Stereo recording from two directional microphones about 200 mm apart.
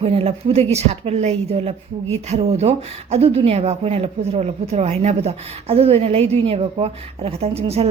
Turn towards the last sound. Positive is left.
turn(degrees=-30)  # may be behind; listen again after turning